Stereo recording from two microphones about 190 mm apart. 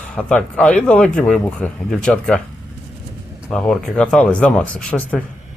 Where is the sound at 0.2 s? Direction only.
5° left (ahead or behind).